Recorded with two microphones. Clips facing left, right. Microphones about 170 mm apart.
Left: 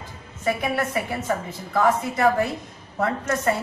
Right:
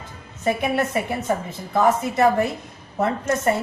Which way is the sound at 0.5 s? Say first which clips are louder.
Right 3 dB; 25° right (ahead or behind).